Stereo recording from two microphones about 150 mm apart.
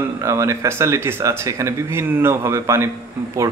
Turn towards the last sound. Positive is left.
turn(degrees=-20)  # may be behind; listen again after turning